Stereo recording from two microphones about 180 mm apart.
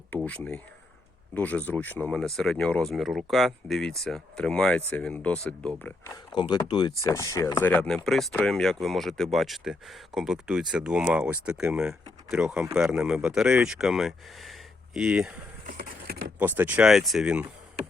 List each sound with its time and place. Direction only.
0.3 s speech: 5° left (ahead or behind)
6.3 s speech: 25° left (ahead or behind); by 15.4 s 5° right (ahead or behind)
15.6 s a sound: 50° right (ahead or behind)
16.4 s speech: 10° right (ahead or behind)